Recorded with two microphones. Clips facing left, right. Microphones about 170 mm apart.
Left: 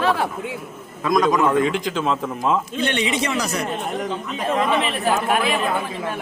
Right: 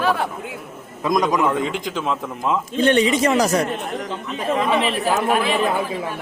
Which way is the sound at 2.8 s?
45° right (ahead or behind).